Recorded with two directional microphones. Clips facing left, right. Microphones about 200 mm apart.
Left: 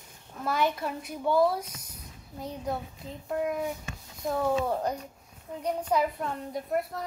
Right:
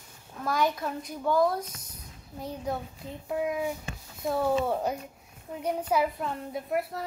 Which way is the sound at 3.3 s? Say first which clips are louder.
Even; 5° right (ahead or behind).